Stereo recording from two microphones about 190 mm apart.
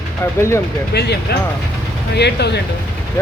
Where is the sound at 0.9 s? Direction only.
60° left (ahead or behind).